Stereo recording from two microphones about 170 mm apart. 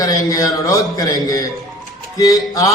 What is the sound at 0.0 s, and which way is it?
A man's voice, 20° left (ahead or behind).